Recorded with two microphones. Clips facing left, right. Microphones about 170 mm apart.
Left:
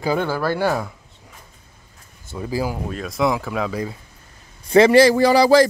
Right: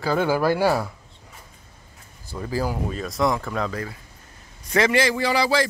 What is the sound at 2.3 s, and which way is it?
Speech, 10° left (ahead or behind).